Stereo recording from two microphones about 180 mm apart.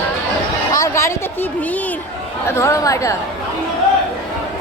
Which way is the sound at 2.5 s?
15° left (ahead or behind).